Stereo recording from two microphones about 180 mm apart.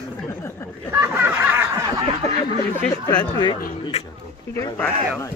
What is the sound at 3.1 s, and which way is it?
Speech, 25° left (ahead or behind).